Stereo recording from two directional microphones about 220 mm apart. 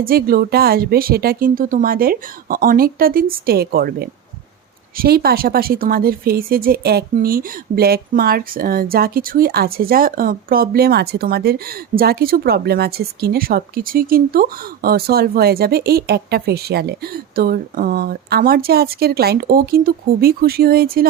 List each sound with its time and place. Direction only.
0.0 s speech: 45° right (ahead or behind)